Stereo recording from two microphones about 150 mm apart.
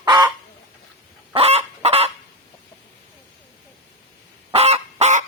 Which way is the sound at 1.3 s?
45° right (ahead or behind).